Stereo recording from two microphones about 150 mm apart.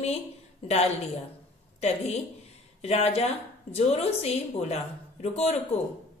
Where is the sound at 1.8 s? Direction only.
45° left (ahead or behind).